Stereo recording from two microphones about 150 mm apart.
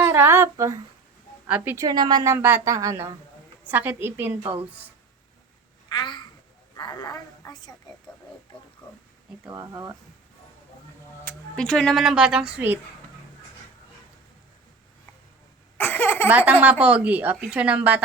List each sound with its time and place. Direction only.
0.0 s a sound: 15° right (ahead or behind)
1.5 s a woman's voice: 10° right (ahead or behind)
5.9 s a woman's voice: 30° left (ahead or behind)
9.5 s a woman's voice: 20° right (ahead or behind)
11.3 s speech: 5° left (ahead or behind); by 12.8 s 10° right (ahead or behind)
15.8 s speech: 15° left (ahead or behind)
16.5 s speech: 10° right (ahead or behind)